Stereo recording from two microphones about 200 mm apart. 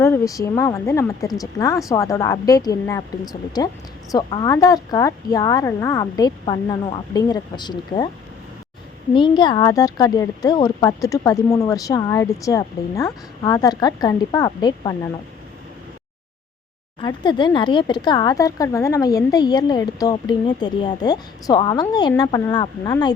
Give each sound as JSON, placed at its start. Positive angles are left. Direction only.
{"t": 0.0, "sound": "speech", "side_deg": 15}
{"t": 4.1, "sound": "speech", "side_deg": 20}
{"t": 9.1, "sound": "speech", "side_deg": 25}
{"t": 17.0, "sound": "speech", "side_deg": 20}